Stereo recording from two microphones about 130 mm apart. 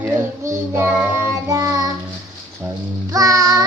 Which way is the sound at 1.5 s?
30° right (ahead or behind).